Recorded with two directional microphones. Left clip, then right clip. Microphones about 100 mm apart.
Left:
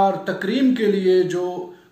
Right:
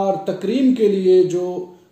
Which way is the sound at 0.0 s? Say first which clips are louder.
Left 1 dB; 45° right (ahead or behind).